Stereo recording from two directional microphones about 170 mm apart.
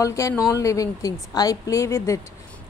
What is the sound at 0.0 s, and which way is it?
Speech, 20° left (ahead or behind).